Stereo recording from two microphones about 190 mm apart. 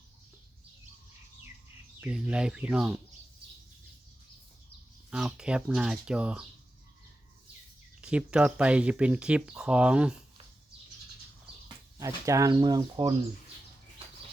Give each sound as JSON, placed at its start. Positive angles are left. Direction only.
{"t": 2.0, "sound": "speech", "side_deg": -5}
{"t": 5.1, "sound": "speech", "side_deg": -5}
{"t": 8.0, "sound": "speech", "side_deg": -5}
{"t": 11.9, "sound": "speech", "side_deg": -15}